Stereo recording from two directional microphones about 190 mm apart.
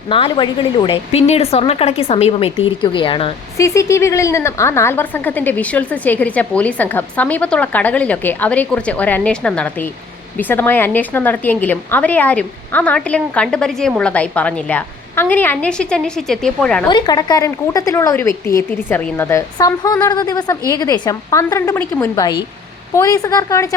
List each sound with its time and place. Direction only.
0.1 s speech: 25° left (ahead or behind)
3.6 s a woman's voice: 15° left (ahead or behind)
16.9 s a woman's voice: 20° left (ahead or behind)